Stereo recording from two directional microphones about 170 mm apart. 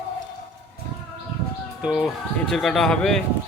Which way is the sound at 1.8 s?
Centre (ahead or behind).